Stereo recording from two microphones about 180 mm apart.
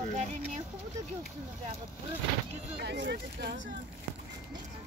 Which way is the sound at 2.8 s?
70° right (ahead or behind).